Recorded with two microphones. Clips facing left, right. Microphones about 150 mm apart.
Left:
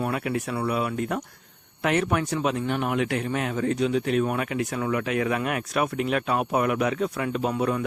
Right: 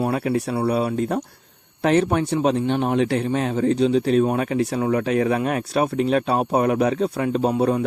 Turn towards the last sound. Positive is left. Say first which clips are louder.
# right 5 dB
turn(degrees=-35)  # may be behind; listen again after turning